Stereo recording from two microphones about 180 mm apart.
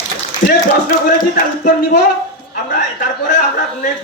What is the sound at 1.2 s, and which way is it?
Speech, 60° left (ahead or behind).